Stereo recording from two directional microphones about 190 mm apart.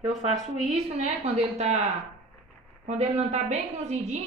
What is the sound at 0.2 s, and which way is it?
A woman's voice, 35° right (ahead or behind).